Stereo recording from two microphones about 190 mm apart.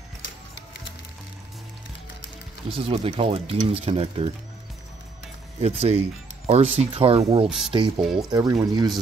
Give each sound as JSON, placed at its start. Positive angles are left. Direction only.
{"t": 2.7, "sound": "speech", "side_deg": -30}
{"t": 5.6, "sound": "speech", "side_deg": -35}
{"t": 7.4, "sound": "speech", "side_deg": 0}
{"t": 8.3, "sound": "speech", "side_deg": -20}